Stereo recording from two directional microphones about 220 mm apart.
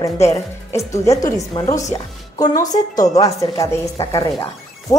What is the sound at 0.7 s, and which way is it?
A woman's voice, 15° left (ahead or behind).